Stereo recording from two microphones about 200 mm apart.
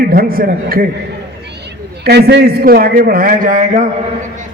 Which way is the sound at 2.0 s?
55° right (ahead or behind).